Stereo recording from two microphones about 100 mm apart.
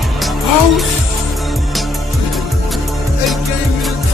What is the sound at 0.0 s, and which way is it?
Music, centre (ahead or behind).